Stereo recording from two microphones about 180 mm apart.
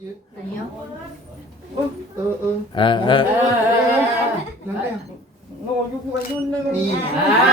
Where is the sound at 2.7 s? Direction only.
25° left (ahead or behind).